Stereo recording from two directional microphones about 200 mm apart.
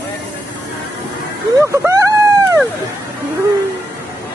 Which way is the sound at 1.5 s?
15° right (ahead or behind).